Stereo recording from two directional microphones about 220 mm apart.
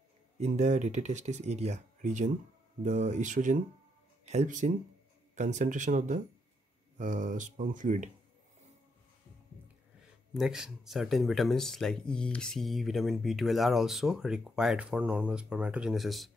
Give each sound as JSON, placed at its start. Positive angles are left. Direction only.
{"t": 0.4, "sound": "speech", "side_deg": -30}
{"t": 10.3, "sound": "speech", "side_deg": 0}